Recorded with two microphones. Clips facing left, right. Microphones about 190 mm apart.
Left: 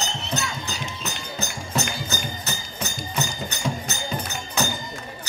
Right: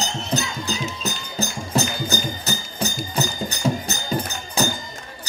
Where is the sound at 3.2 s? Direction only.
35° right (ahead or behind).